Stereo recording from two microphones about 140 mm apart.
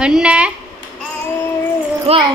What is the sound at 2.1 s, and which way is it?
Speech, 45° right (ahead or behind).